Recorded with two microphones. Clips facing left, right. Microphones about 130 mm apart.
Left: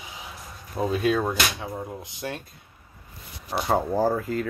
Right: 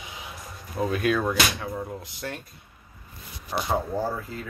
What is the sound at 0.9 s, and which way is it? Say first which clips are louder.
Speech: left 1 dB; 25° left (ahead or behind).